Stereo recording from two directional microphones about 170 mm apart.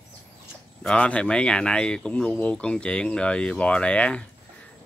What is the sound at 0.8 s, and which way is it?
Speech, 5° left (ahead or behind).